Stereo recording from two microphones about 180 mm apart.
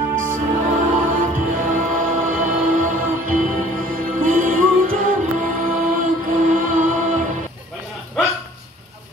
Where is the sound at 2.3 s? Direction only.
50° right (ahead or behind).